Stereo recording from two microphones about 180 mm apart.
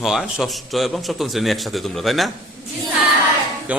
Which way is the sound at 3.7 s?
5° right (ahead or behind).